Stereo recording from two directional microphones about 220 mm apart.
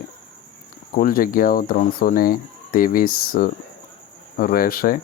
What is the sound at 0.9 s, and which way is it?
Speech, 40° left (ahead or behind).